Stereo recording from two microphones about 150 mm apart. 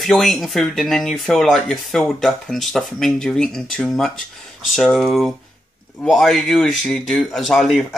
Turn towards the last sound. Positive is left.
turn(degrees=0)  # may be behind; listen again after turning